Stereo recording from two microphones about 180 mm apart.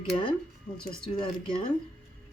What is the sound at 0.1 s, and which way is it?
A woman's voice, 30° left (ahead or behind).